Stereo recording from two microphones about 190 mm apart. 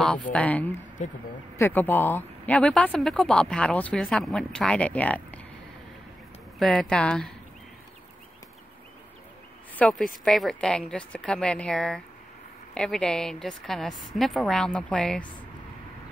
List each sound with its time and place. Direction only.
0.3 s speech: 5° left (ahead or behind)
1.0 s speech: 40° left (ahead or behind)
1.6 s speech: 10° left (ahead or behind)
6.6 s speech: centre (ahead or behind)
9.8 s speech: 5° left (ahead or behind)